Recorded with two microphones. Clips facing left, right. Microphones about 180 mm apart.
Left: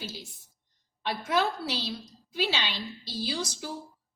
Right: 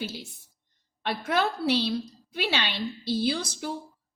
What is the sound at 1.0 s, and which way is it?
A woman's voice, 60° right (ahead or behind).